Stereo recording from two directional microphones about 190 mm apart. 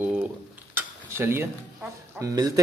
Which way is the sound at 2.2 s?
20° right (ahead or behind).